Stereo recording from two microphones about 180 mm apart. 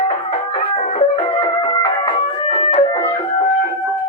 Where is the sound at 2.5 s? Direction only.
35° left (ahead or behind).